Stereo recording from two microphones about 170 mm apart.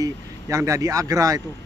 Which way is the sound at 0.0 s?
20° right (ahead or behind).